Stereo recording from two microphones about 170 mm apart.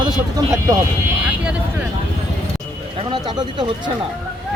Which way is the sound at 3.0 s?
25° right (ahead or behind).